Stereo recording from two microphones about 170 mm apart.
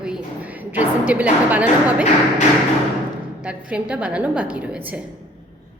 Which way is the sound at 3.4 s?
5° right (ahead or behind).